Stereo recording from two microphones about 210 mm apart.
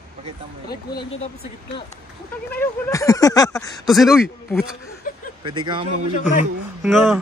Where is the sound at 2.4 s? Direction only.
10° left (ahead or behind).